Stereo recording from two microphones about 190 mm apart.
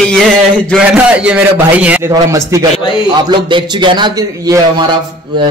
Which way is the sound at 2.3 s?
20° right (ahead or behind).